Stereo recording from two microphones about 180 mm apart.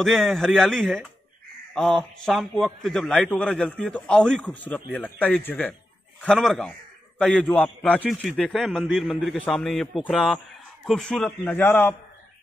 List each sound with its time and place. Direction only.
0.0 s a man's voice: centre (ahead or behind)